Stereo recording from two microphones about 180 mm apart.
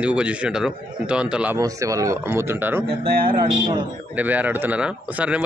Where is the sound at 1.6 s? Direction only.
20° right (ahead or behind).